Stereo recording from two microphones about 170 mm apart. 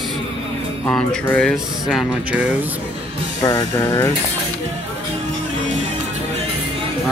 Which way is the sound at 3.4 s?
15° left (ahead or behind).